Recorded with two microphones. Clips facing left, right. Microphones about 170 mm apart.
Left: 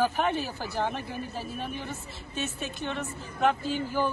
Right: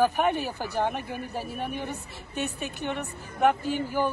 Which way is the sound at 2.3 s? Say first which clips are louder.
Right 2 dB; 65° right (ahead or behind).